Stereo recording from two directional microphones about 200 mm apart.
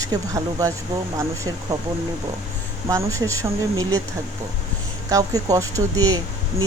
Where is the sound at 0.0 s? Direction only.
15° right (ahead or behind).